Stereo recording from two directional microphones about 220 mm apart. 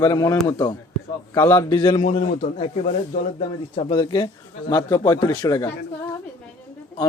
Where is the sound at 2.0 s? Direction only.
30° left (ahead or behind).